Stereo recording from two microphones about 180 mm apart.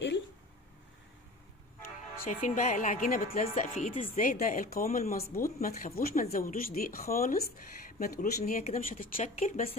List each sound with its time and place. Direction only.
2.2 s a woman's voice: 45° left (ahead or behind)